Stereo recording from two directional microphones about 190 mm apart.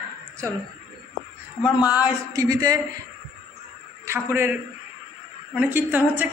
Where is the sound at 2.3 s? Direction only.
20° right (ahead or behind).